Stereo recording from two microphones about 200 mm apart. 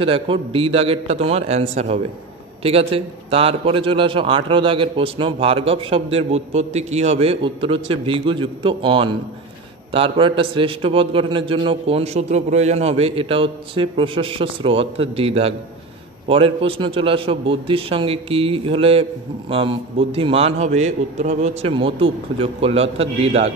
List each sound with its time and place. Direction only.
0.0 s a man's voice: 25° right (ahead or behind)